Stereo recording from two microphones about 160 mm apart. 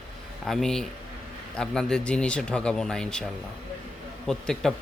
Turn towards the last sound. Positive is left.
turn(degrees=5)  # may be behind; listen again after turning